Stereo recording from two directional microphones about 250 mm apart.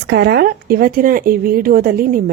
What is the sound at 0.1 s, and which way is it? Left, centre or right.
A woman's voice, right.